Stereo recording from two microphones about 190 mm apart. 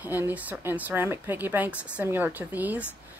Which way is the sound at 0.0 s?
10° right (ahead or behind).